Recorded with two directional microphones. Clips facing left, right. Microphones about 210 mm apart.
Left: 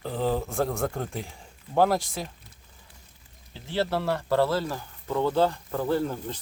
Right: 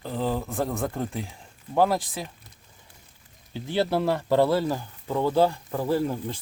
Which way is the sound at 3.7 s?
15° right (ahead or behind).